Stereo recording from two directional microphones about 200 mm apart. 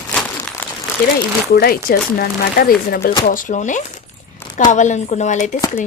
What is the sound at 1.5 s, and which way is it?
Speech, 50° left (ahead or behind).